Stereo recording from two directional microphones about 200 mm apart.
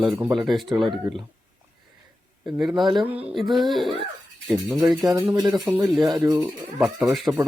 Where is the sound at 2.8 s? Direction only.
25° right (ahead or behind).